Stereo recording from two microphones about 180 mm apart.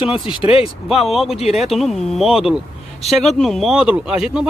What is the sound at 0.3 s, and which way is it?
Speech, 30° left (ahead or behind).